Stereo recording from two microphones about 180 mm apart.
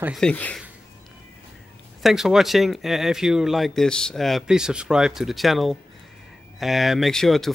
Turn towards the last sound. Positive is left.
turn(degrees=0)  # may be behind; listen again after turning